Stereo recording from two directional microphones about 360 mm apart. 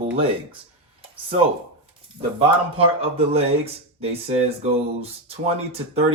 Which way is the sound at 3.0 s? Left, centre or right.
Centre.